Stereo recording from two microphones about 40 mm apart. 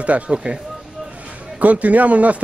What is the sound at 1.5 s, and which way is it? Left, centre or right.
Speech, right.